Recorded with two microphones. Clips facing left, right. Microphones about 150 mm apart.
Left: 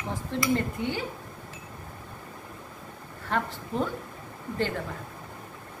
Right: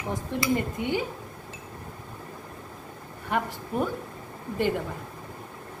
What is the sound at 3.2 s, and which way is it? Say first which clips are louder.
Speech: right 1 dB; 15° right (ahead or behind).